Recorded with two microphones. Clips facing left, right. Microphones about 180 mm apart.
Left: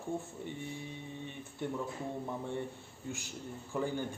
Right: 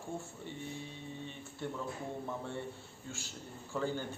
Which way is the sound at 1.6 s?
15° left (ahead or behind).